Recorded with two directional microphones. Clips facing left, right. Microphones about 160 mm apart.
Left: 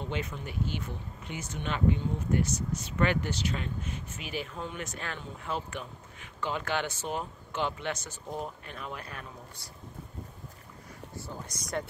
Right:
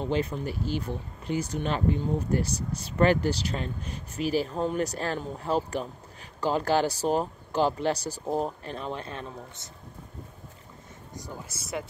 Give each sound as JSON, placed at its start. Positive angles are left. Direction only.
{"t": 0.0, "sound": "speech", "side_deg": -35}
{"t": 11.1, "sound": "speech", "side_deg": -10}